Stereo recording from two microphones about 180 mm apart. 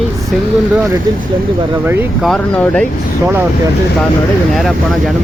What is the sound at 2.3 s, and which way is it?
Speech, 5° left (ahead or behind).